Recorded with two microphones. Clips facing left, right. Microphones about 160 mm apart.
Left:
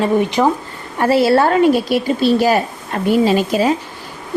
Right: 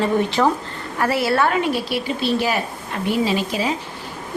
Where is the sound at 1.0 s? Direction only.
30° left (ahead or behind).